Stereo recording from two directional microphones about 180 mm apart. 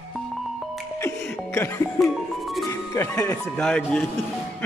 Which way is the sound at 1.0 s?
15° left (ahead or behind).